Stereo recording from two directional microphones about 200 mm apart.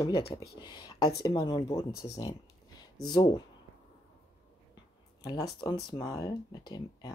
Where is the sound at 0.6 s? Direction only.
20° left (ahead or behind).